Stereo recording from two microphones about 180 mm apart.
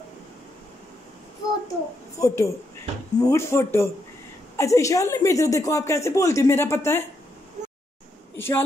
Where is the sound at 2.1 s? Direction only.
15° left (ahead or behind).